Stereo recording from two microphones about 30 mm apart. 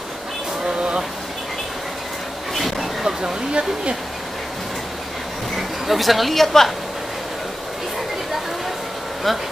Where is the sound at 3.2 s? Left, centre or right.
Right.